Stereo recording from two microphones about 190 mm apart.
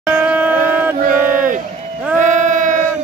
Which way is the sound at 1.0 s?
45° right (ahead or behind).